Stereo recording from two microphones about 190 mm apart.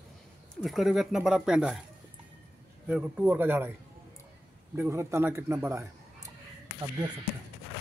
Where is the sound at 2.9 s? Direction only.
5° right (ahead or behind).